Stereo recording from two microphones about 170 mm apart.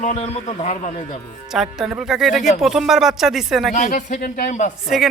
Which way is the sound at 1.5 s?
5° right (ahead or behind).